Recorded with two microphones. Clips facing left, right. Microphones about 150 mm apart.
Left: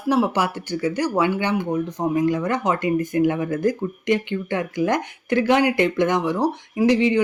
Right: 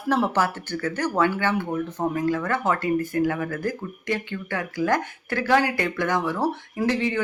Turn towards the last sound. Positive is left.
turn(degrees=15)  # may be behind; listen again after turning